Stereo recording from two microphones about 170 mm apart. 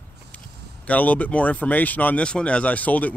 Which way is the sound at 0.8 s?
10° left (ahead or behind).